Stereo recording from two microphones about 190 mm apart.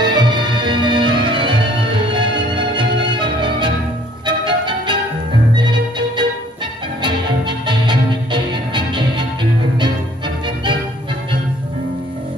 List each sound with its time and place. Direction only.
0.0 s music: 25° right (ahead or behind)